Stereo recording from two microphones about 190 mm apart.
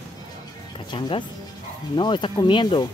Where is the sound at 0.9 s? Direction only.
25° left (ahead or behind).